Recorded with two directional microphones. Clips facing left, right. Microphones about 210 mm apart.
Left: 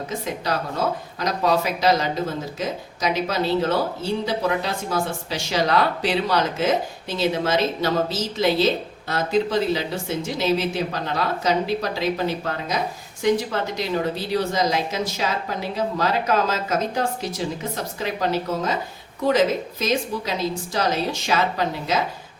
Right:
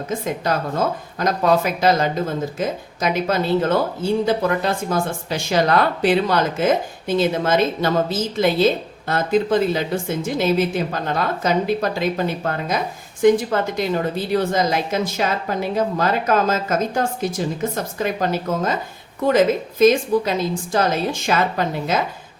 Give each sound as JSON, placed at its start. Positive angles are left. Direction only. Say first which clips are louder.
{"t": 0.4, "sound": "speech", "louder": "right 3 dB", "side_deg": -50}